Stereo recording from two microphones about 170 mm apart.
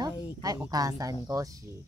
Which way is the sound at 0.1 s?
25° left (ahead or behind).